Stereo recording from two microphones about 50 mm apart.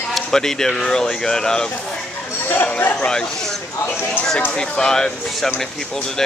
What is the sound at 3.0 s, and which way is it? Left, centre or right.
Speech, centre.